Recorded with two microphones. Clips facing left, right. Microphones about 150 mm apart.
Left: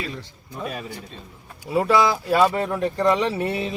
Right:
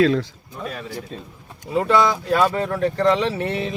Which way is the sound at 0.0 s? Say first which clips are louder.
Right 15 dB; 90° right.